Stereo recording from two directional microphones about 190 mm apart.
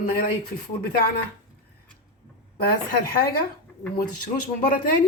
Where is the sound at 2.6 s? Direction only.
50° left (ahead or behind).